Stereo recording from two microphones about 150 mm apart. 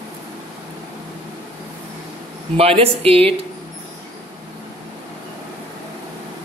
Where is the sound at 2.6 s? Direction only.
40° right (ahead or behind).